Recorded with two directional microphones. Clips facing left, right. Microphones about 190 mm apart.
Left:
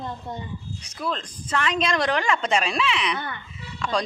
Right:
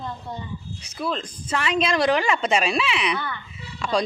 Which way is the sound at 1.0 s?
5° right (ahead or behind).